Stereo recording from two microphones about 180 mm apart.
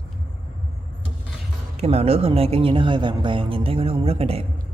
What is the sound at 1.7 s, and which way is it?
Speech, 35° right (ahead or behind).